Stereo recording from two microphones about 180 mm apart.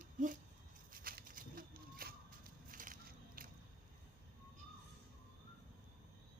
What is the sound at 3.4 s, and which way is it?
Squish, 50° right (ahead or behind).